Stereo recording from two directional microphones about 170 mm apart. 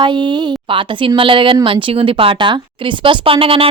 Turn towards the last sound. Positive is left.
turn(degrees=-35)  # may be behind; listen again after turning